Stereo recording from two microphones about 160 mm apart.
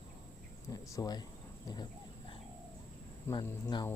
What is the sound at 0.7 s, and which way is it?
Speech, 25° left (ahead or behind).